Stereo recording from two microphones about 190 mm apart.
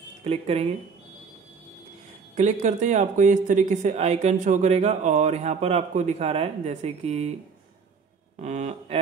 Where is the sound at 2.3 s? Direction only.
40° right (ahead or behind).